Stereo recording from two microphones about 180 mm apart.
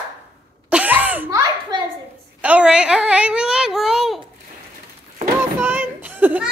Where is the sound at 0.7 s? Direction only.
10° right (ahead or behind).